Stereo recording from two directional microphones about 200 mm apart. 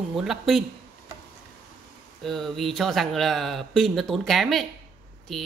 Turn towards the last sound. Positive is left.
turn(degrees=0)  # may be behind; listen again after turning